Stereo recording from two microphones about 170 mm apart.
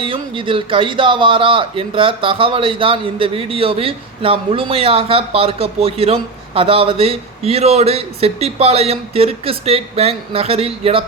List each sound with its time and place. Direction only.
0.0 s speech: 30° right (ahead or behind)